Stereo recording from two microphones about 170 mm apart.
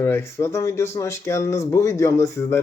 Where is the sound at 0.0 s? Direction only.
15° left (ahead or behind).